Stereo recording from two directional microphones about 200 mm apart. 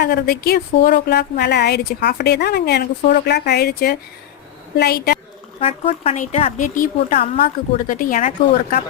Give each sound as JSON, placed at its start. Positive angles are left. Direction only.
{"t": 0.0, "sound": "a woman's voice", "side_deg": 50}
{"t": 5.5, "sound": "speech", "side_deg": 30}